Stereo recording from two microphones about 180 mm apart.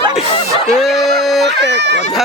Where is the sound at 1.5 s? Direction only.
75° right (ahead or behind).